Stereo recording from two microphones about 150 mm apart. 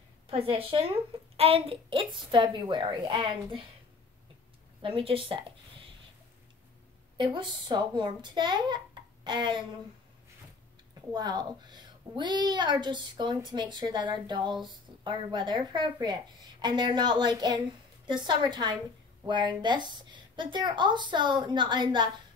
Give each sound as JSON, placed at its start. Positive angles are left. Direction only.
{"t": 0.3, "sound": "a woman's voice", "side_deg": -40}
{"t": 4.8, "sound": "speech", "side_deg": -35}
{"t": 7.2, "sound": "a woman's voice", "side_deg": -30}
{"t": 11.1, "sound": "a woman's voice", "side_deg": -30}